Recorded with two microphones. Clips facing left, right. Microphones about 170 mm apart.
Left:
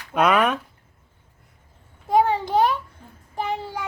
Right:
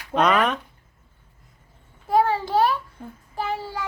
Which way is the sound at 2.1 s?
20° left (ahead or behind).